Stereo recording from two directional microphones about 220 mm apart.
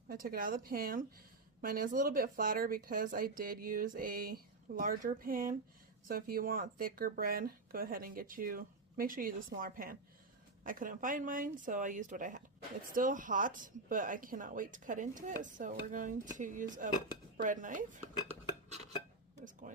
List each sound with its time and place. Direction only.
0.1 s speech: 40° right (ahead or behind)
17.3 s dishes: 35° right (ahead or behind)
19.4 s a sound: 35° right (ahead or behind)